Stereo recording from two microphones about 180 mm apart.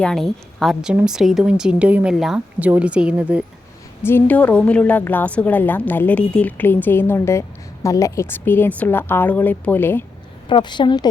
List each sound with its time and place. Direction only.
0.0 s a woman's voice: centre (ahead or behind)
4.0 s a woman's voice: 10° left (ahead or behind)
10.5 s a woman's voice: 25° left (ahead or behind)